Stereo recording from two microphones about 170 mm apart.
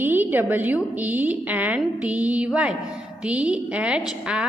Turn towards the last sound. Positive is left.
turn(degrees=-5)  # may be behind; listen again after turning